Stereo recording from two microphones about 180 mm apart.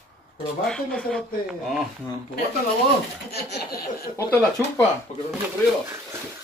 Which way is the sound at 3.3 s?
60° left (ahead or behind).